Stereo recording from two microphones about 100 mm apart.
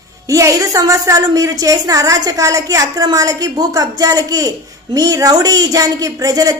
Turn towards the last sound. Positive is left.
turn(degrees=-40)  # may be behind; listen again after turning